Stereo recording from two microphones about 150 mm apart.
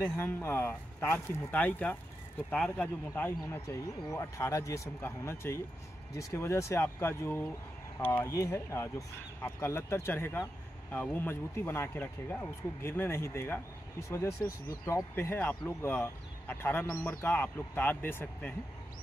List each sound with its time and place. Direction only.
0.0 s speech: 15° left (ahead or behind)